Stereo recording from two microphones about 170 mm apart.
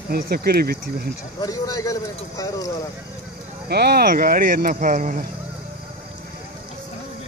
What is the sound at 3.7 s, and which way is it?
Speech, 70° right (ahead or behind).